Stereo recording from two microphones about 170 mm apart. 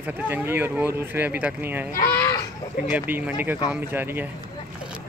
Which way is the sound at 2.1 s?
20° left (ahead or behind).